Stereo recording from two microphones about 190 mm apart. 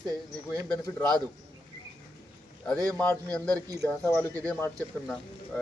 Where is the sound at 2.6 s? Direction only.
5° left (ahead or behind).